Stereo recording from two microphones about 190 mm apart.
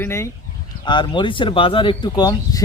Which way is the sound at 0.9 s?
25° left (ahead or behind).